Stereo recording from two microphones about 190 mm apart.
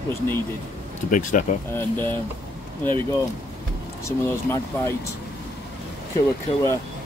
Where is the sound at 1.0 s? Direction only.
45° left (ahead or behind).